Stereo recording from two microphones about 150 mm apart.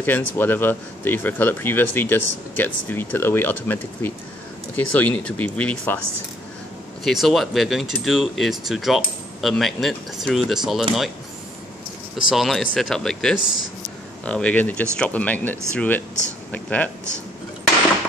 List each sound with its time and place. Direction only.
0.0 s speech: 10° left (ahead or behind)
7.1 s speech: centre (ahead or behind)
12.3 s speech: centre (ahead or behind)